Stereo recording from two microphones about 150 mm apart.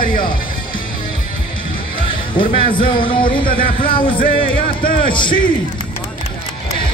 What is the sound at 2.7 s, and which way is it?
Music, 35° left (ahead or behind).